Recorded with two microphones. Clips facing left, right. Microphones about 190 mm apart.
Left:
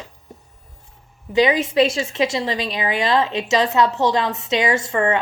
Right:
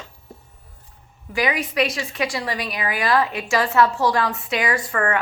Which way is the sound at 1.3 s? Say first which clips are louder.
Left 6 dB; 25° left (ahead or behind).